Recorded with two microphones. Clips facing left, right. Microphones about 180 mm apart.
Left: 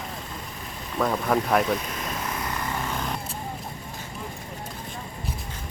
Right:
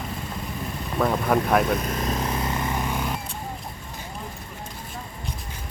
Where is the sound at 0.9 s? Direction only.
5° right (ahead or behind).